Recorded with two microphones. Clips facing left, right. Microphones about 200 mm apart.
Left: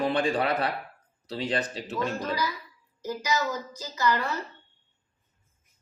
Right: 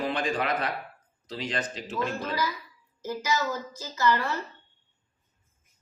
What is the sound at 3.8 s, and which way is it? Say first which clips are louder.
Speech: right 1 dB; 15° left (ahead or behind).